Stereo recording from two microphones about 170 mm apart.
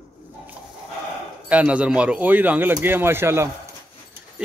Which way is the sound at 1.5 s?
5° right (ahead or behind).